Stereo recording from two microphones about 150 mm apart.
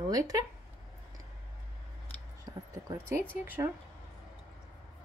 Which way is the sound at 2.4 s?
25° right (ahead or behind).